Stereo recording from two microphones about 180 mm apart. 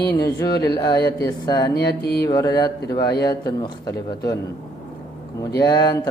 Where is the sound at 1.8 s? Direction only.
65° left (ahead or behind).